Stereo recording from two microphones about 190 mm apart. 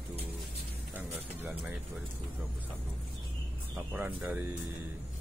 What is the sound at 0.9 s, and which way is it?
Mechanisms, 10° right (ahead or behind).